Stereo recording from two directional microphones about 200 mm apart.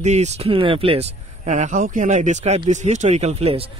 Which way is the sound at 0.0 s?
35° right (ahead or behind).